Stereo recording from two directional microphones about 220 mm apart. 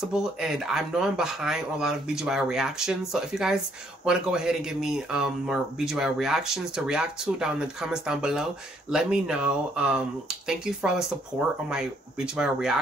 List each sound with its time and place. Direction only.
0.0 s speech: centre (ahead or behind)